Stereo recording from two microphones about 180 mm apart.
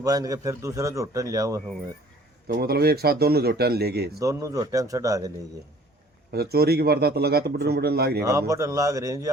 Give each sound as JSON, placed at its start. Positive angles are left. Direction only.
{"t": 0.0, "sound": "a man's voice", "side_deg": -20}
{"t": 2.5, "sound": "a man's voice", "side_deg": -60}
{"t": 4.2, "sound": "a man's voice", "side_deg": -20}
{"t": 6.3, "sound": "a man's voice", "side_deg": -60}
{"t": 8.2, "sound": "a man's voice", "side_deg": -15}